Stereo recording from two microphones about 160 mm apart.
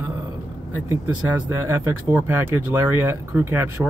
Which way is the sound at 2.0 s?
15° right (ahead or behind).